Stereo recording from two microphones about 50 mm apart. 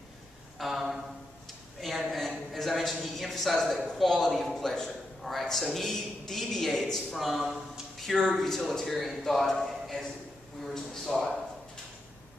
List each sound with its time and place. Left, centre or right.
0.6 s a sound: centre
5.9 s speech: centre
8.1 s a man's voice: centre